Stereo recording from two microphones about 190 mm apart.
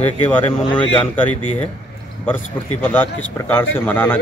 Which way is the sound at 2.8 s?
10° left (ahead or behind).